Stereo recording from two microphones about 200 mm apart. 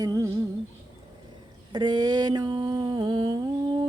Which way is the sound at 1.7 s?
20° right (ahead or behind).